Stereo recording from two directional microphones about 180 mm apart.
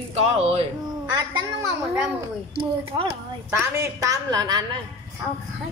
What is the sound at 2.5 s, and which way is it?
Speech, 30° right (ahead or behind).